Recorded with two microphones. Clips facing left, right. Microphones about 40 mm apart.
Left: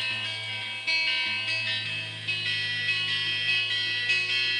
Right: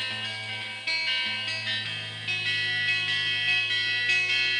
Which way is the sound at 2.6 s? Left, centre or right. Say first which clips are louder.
Right 2 dB; centre.